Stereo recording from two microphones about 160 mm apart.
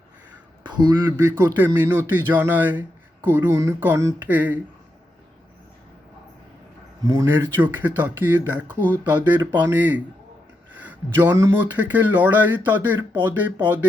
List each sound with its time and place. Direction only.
0.6 s a man's voice: 25° right (ahead or behind)
1.4 s speech: 15° right (ahead or behind)
7.0 s speech: 20° right (ahead or behind)